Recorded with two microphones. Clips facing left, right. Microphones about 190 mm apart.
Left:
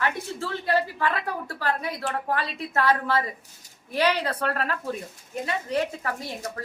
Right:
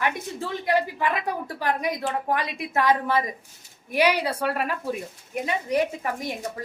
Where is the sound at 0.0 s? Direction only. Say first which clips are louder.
Right 1 dB; 15° right (ahead or behind).